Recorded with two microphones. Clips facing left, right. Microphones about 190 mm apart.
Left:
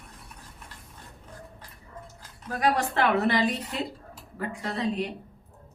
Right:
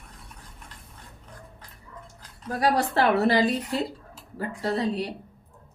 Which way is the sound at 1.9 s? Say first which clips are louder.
Left 1 dB; 35° left (ahead or behind).